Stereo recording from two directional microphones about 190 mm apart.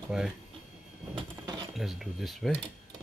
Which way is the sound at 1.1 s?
20° right (ahead or behind).